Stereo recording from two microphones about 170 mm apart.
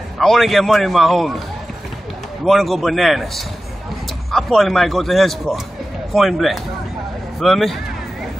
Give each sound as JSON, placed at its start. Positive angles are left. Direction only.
{"t": 0.2, "sound": "speech", "side_deg": 0}
{"t": 2.4, "sound": "speech", "side_deg": 0}